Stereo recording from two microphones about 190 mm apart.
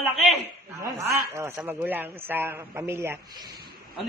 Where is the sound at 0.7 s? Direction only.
15° right (ahead or behind).